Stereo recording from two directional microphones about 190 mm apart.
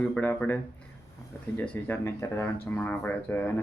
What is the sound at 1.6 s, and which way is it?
Speech, 5° left (ahead or behind).